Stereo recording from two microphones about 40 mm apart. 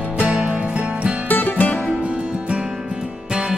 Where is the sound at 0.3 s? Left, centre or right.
Right.